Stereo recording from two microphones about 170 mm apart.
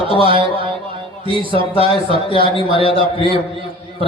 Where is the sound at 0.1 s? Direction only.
30° right (ahead or behind).